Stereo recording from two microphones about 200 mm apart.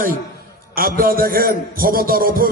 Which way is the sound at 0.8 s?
45° right (ahead or behind).